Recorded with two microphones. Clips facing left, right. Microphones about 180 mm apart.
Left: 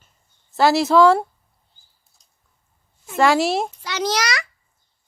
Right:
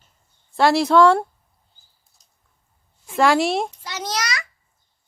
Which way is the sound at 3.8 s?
80° left.